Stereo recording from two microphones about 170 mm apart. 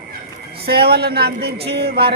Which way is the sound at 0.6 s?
70° right (ahead or behind).